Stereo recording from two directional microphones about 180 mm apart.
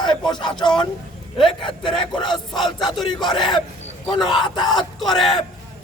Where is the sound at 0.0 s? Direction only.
25° left (ahead or behind).